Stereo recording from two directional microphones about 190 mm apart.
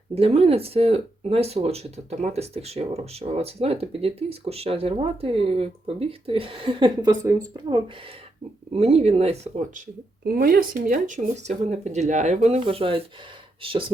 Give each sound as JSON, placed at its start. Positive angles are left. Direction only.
{"t": 0.1, "sound": "speech", "side_deg": -30}
{"t": 8.7, "sound": "speech", "side_deg": -30}